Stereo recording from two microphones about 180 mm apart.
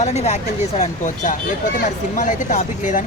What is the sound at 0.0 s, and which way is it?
Speech, 40° left (ahead or behind).